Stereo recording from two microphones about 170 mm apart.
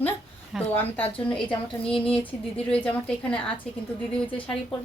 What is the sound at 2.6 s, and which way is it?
Speech, 5° left (ahead or behind).